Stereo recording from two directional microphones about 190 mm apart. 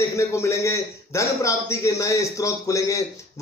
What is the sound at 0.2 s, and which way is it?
A man's voice, 15° left (ahead or behind).